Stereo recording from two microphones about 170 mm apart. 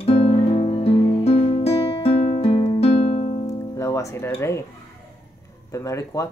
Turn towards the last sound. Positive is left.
turn(degrees=20)  # may be behind; listen again after turning